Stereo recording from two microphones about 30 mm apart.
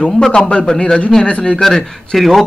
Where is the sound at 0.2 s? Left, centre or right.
Left.